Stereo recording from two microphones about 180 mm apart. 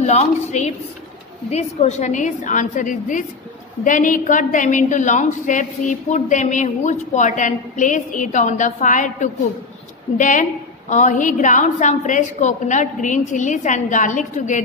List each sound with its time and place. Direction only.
0.0 s a woman's voice: 35° left (ahead or behind)